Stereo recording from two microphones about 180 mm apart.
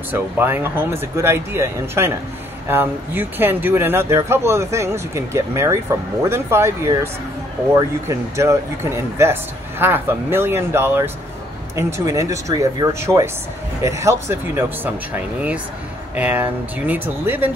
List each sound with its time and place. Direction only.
0.1 s speech: 10° right (ahead or behind)